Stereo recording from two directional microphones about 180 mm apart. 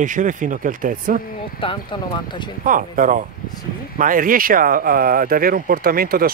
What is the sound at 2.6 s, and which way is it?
Speech, 50° right (ahead or behind).